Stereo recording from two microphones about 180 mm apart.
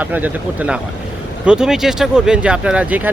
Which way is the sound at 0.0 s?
10° right (ahead or behind).